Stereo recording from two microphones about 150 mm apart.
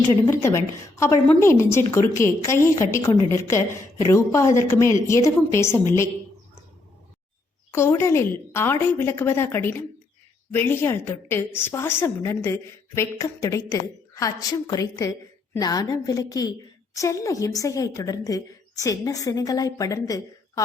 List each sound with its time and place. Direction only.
0.4 s a woman's voice: 20° left (ahead or behind)
7.7 s a woman's voice: 15° left (ahead or behind)